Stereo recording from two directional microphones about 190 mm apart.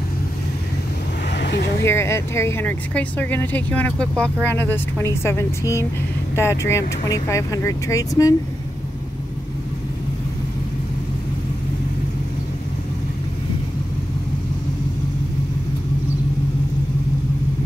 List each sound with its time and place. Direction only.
1.3 s vehicle: 65° left (ahead or behind)
1.9 s speech: 15° left (ahead or behind)